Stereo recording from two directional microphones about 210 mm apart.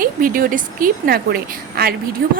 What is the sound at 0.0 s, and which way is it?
A woman's voice, 40° right (ahead or behind).